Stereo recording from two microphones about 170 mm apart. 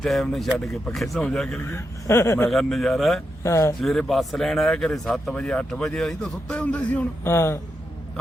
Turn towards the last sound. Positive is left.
turn(degrees=15)  # may be behind; listen again after turning